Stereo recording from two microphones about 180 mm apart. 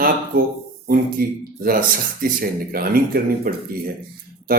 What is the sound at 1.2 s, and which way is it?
Speech, 55° right (ahead or behind).